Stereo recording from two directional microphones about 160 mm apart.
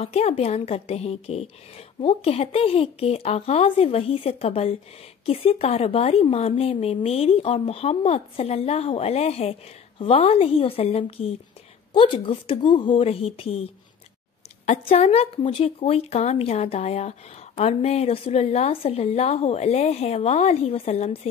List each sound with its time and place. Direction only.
0.0 s speech: 40° left (ahead or behind)
14.7 s speech: 40° left (ahead or behind)